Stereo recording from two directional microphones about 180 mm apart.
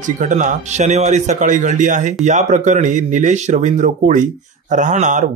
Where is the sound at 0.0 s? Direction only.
45° right (ahead or behind).